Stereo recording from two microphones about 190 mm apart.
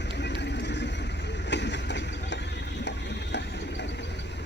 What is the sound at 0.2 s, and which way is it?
Vehicle, 65° left (ahead or behind).